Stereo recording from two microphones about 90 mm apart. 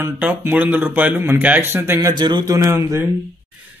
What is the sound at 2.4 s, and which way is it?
Speech, 35° right (ahead or behind).